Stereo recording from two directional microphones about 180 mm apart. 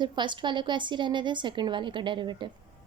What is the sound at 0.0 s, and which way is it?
A woman's voice, 25° right (ahead or behind).